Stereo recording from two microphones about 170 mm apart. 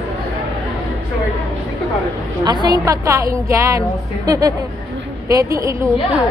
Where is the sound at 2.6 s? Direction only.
20° right (ahead or behind).